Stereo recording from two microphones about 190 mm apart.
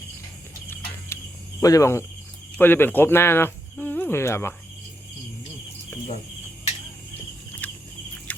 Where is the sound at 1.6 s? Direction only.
15° left (ahead or behind).